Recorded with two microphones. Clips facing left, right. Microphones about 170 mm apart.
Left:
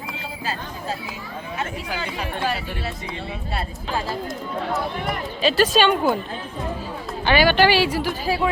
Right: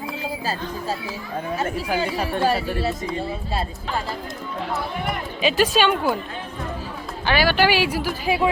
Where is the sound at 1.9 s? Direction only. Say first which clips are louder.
Right 5 dB; 40° right (ahead or behind).